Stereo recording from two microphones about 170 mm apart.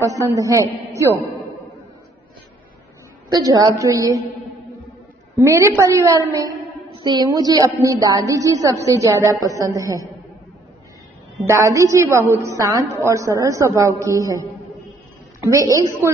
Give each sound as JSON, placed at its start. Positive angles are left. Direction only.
{"t": 0.0, "sound": "a woman's voice", "side_deg": -20}
{"t": 3.3, "sound": "a woman's voice", "side_deg": -25}
{"t": 5.3, "sound": "a woman's voice", "side_deg": -15}
{"t": 11.4, "sound": "a woman's voice", "side_deg": -15}
{"t": 15.4, "sound": "a woman's voice", "side_deg": -20}